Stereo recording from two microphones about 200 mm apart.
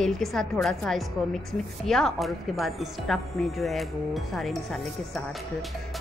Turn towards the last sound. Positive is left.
turn(degrees=0)  # may be behind; listen again after turning